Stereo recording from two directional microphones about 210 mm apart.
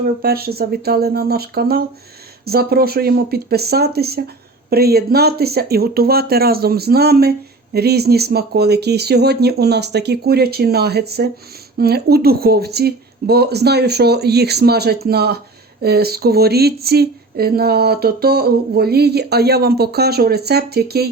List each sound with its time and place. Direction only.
0.0 s speech: 45° right (ahead or behind)